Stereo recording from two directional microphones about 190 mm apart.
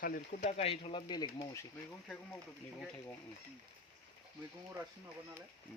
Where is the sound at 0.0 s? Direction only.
35° left (ahead or behind).